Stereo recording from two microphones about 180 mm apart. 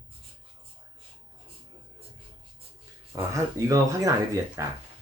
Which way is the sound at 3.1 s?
20° right (ahead or behind).